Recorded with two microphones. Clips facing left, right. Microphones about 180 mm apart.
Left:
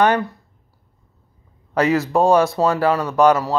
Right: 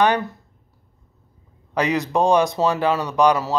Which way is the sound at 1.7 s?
15° right (ahead or behind).